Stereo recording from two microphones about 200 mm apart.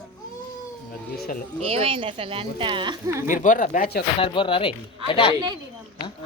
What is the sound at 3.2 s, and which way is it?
Speech, 40° left (ahead or behind).